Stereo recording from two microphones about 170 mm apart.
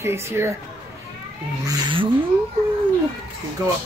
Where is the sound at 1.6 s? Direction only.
30° right (ahead or behind).